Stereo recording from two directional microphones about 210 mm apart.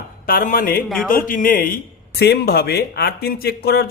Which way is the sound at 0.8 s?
Centre (ahead or behind).